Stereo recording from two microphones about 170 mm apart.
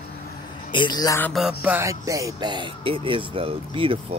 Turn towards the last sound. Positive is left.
turn(degrees=-35)  # may be behind; listen again after turning